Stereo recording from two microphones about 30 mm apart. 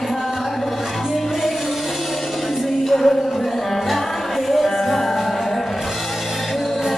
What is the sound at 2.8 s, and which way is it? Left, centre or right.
Music, centre.